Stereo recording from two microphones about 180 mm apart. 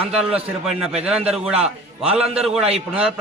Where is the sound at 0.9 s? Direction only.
5° right (ahead or behind).